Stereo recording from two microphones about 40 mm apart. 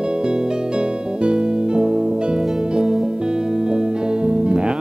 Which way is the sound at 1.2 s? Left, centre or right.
Right.